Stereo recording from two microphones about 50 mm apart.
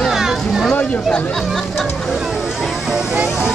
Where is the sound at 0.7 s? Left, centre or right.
Left.